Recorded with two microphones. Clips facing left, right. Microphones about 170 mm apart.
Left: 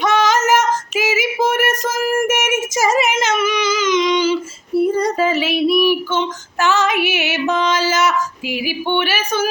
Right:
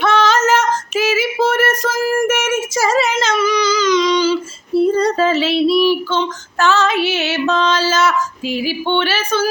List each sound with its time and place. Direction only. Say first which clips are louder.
0.0 s child singing: right 1 dB; 15° left (ahead or behind)